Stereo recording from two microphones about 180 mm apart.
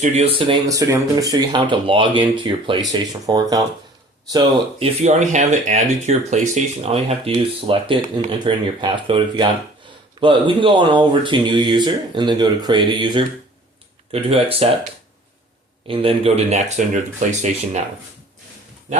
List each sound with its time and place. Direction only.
0.0 s speech: 35° right (ahead or behind)
0.7 s speech: 20° right (ahead or behind)
4.8 s speech: 40° right (ahead or behind)
15.9 s speech: 30° right (ahead or behind)